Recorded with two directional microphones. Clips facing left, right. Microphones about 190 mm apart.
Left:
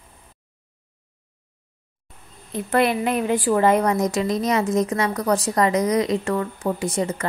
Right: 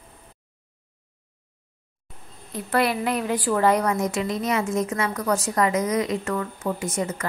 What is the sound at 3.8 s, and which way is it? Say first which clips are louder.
A woman's voice: left 3 dB; 40° left (ahead or behind).